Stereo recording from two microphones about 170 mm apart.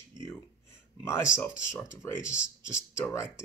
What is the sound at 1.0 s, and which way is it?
Speech, 15° left (ahead or behind).